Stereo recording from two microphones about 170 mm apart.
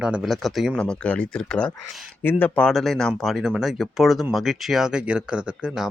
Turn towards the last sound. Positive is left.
turn(degrees=-5)  # may be behind; listen again after turning